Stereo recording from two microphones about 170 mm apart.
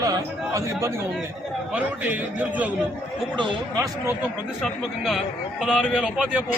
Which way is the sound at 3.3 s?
25° right (ahead or behind).